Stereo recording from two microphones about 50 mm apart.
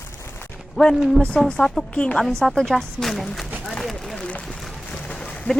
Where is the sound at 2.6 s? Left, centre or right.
Centre.